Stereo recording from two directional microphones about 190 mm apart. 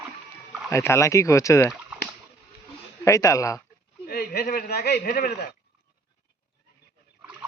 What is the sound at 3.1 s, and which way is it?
Speech, 15° left (ahead or behind).